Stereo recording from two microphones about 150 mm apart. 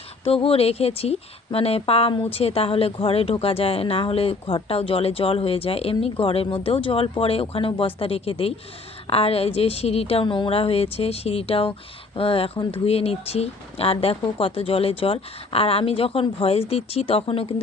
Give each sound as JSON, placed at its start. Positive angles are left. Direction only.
{"t": 0.3, "sound": "speech", "side_deg": 40}